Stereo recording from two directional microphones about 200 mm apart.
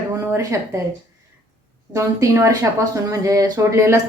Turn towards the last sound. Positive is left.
turn(degrees=-15)  # may be behind; listen again after turning